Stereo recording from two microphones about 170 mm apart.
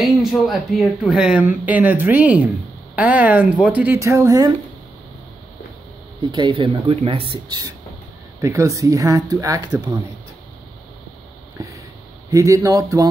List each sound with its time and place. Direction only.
0.0 s speech: centre (ahead or behind); by 4.5 s 20° right (ahead or behind)
6.3 s speech: 30° right (ahead or behind)
12.3 s speech: 20° right (ahead or behind)